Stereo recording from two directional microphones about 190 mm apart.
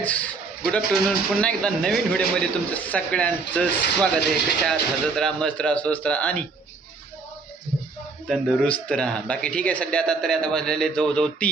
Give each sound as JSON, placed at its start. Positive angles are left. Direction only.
{"t": 0.0, "sound": "a sound", "side_deg": 10}
{"t": 1.0, "sound": "speech", "side_deg": 5}
{"t": 8.3, "sound": "speech", "side_deg": 5}